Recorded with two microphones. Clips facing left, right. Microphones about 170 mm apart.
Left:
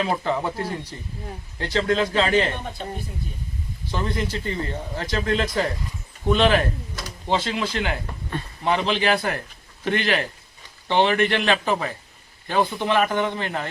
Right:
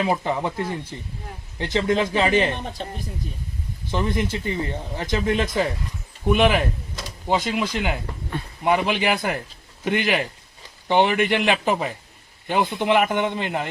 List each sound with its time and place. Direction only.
0.0 s a man's voice: 15° right (ahead or behind)
3.9 s speech: 15° right (ahead or behind)